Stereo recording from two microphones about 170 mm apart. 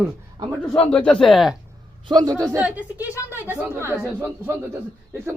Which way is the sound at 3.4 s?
10° right (ahead or behind).